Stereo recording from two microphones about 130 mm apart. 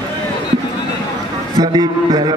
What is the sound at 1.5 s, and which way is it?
Speech, 35° right (ahead or behind).